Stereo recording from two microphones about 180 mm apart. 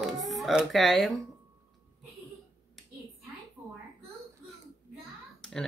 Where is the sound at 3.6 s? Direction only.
15° right (ahead or behind).